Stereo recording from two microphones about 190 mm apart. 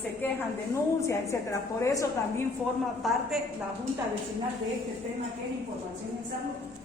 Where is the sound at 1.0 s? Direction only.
15° left (ahead or behind).